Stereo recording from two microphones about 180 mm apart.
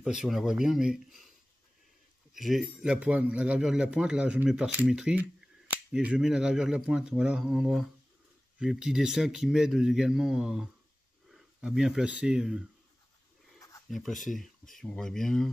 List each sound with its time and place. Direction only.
0.0 s speech: centre (ahead or behind)
2.3 s speech: centre (ahead or behind)
13.6 s a sound: 20° left (ahead or behind)
13.8 s speech: centre (ahead or behind)